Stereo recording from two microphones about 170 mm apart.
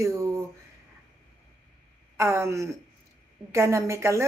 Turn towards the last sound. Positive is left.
turn(degrees=-15)  # may be behind; listen again after turning